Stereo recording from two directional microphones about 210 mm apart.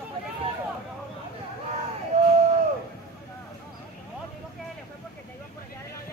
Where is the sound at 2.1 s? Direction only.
30° right (ahead or behind).